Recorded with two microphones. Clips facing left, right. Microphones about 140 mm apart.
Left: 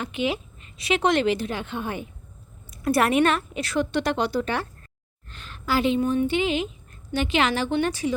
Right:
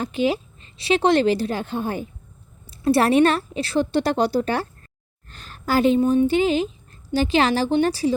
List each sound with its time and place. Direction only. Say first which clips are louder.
0.0 s a woman's voice: right 5 dB; 35° right (ahead or behind)